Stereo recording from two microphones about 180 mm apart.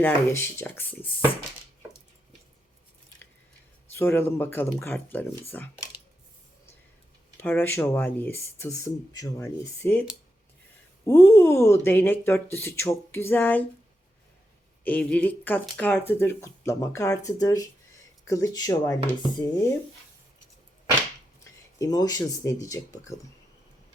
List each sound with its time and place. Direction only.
0.0 s speech: 15° left (ahead or behind)
3.9 s speech: 15° left (ahead or behind)
7.3 s speech: 10° left (ahead or behind)
14.8 s speech: 10° left (ahead or behind)
21.8 s speech: 20° left (ahead or behind)